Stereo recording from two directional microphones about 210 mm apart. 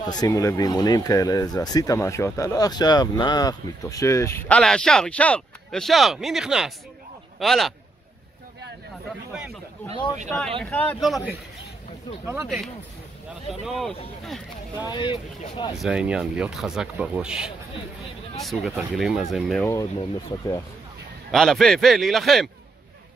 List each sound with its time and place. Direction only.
0.0 s speech: 20° left (ahead or behind); by 7.7 s centre (ahead or behind)
10.6 s speech: 5° left (ahead or behind)
12.3 s speech: 5° right (ahead or behind)
14.8 s speech: 20° left (ahead or behind)
15.8 s speech: 5° right (ahead or behind)
19.6 s speech: 15° left (ahead or behind)
21.3 s speech: centre (ahead or behind)